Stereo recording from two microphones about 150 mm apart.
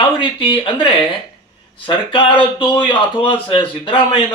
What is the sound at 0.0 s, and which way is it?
A man's voice, 35° left (ahead or behind).